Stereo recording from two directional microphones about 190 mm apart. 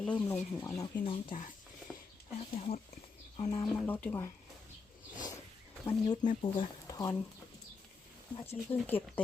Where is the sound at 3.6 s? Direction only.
10° left (ahead or behind).